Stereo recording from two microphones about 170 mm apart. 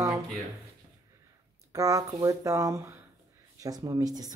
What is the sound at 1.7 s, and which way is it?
Speech, 20° right (ahead or behind).